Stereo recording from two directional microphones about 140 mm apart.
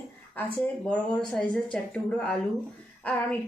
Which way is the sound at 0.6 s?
10° left (ahead or behind).